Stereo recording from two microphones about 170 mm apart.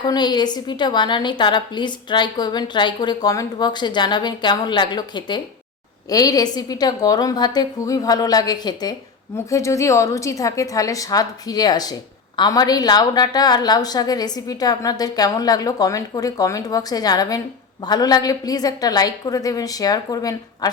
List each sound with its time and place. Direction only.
0.0 s a woman's voice: 25° left (ahead or behind)